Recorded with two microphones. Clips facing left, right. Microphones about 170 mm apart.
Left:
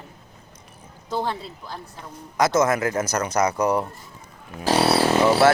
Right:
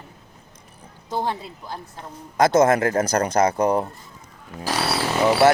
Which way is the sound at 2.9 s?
50° right (ahead or behind).